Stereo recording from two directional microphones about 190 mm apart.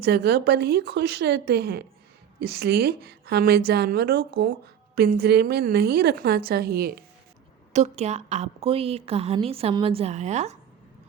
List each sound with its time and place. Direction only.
0.0 s a woman's voice: 55° right (ahead or behind)
7.7 s a woman's voice: 35° right (ahead or behind)